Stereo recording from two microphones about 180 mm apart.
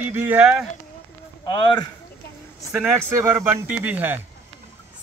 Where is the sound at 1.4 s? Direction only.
25° left (ahead or behind).